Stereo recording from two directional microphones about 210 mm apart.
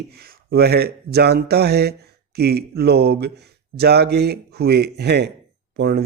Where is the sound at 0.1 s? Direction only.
50° right (ahead or behind).